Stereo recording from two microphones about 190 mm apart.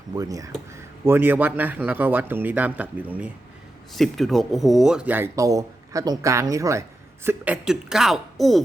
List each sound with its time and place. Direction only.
0.2 s speech: 20° right (ahead or behind); by 8.6 s centre (ahead or behind)